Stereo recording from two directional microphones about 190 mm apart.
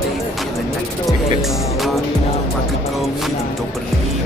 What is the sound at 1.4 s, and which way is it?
Music, centre (ahead or behind).